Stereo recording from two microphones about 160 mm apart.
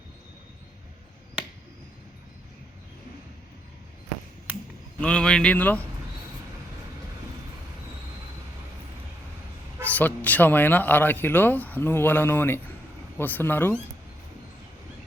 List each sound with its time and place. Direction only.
4.9 s speech: 5° left (ahead or behind)
9.8 s speech: 10° left (ahead or behind)